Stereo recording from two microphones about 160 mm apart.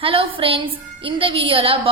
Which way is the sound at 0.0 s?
35° right (ahead or behind).